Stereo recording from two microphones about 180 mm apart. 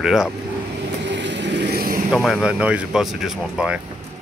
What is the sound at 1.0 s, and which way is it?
Vehicle, 80° right.